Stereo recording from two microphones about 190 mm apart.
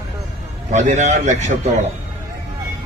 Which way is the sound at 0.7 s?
40° right (ahead or behind).